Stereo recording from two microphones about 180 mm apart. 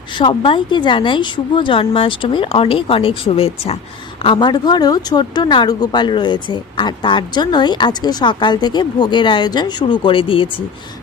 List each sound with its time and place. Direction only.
0.2 s a woman's voice: 25° left (ahead or behind)